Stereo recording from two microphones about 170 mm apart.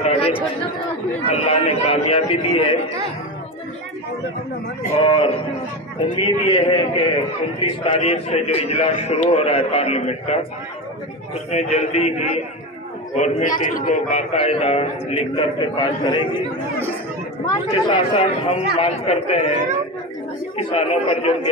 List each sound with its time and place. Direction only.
0.0 s chatter: 35° left (ahead or behind)
1.2 s a man's voice: 40° left (ahead or behind)
5.0 s a man's voice: 30° left (ahead or behind)
11.5 s a man's voice: 40° left (ahead or behind)
17.6 s a man's voice: 30° left (ahead or behind)